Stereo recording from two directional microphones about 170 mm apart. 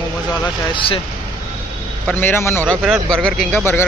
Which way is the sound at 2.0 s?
10° left (ahead or behind).